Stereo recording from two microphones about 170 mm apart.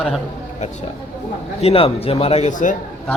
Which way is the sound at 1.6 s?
35° left (ahead or behind).